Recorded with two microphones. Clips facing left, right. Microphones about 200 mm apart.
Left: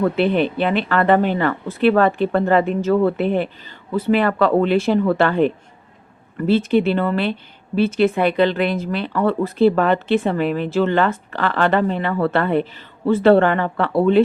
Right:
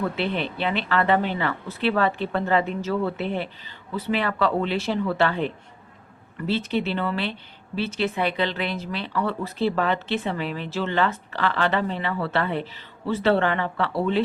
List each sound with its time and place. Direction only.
0.2 s speech: 50° left (ahead or behind)